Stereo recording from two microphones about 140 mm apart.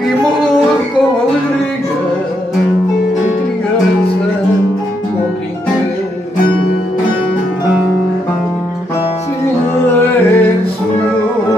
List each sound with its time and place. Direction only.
9.8 s music: 15° left (ahead or behind)